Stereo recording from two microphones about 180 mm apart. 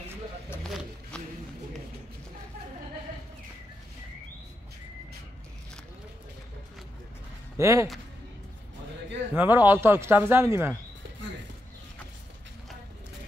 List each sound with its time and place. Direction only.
0.7 s a sound: centre (ahead or behind)
7.5 s speech: 15° right (ahead or behind)
9.3 s speech: 10° right (ahead or behind)